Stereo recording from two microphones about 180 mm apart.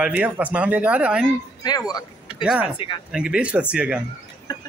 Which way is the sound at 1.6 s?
20° left (ahead or behind).